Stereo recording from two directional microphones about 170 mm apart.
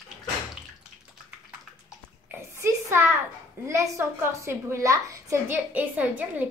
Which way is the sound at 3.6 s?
15° right (ahead or behind).